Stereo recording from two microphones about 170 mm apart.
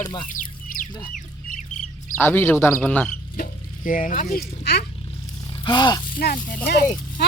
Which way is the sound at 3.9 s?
55° left (ahead or behind).